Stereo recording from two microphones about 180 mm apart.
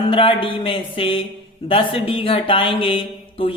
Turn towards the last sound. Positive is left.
turn(degrees=30)  # may be behind; listen again after turning